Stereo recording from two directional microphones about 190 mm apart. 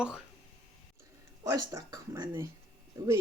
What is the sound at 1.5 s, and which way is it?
Speech, 15° right (ahead or behind).